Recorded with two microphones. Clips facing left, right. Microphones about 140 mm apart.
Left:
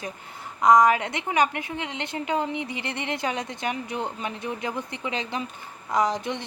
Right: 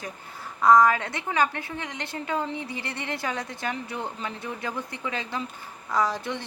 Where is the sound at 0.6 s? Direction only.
15° left (ahead or behind).